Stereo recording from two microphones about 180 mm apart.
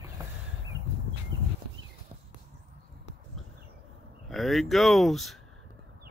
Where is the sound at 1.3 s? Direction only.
90° right.